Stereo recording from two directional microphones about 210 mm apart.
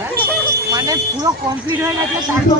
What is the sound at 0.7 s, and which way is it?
Speech, 15° right (ahead or behind).